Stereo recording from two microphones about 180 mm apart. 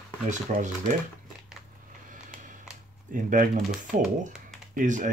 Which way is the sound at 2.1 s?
45° right (ahead or behind).